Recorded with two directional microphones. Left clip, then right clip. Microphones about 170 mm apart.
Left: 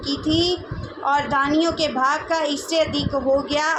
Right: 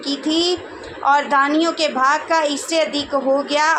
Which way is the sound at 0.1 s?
25° right (ahead or behind).